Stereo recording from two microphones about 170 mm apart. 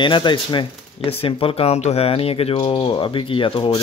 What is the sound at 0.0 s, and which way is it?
Speech, 30° left (ahead or behind).